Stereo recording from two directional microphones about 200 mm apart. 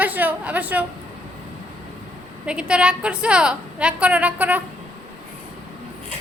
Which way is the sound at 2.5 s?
5° right (ahead or behind).